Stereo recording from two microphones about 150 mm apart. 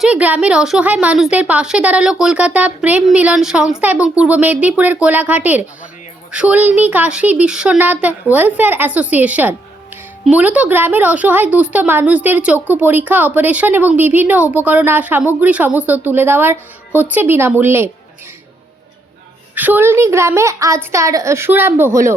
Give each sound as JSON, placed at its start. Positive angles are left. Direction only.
{"t": 0.0, "sound": "a woman's voice", "side_deg": -10}
{"t": 19.5, "sound": "a woman's voice", "side_deg": -10}